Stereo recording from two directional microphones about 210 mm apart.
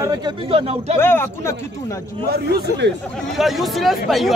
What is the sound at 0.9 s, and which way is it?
Speech, 10° left (ahead or behind).